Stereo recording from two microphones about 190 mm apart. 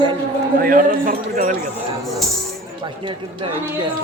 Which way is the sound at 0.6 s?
45° right (ahead or behind).